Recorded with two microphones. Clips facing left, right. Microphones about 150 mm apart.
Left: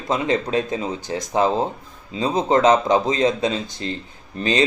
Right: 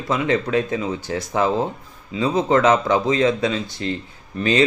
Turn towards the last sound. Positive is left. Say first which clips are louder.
# right 2 dB
turn(degrees=25)  # may be behind; listen again after turning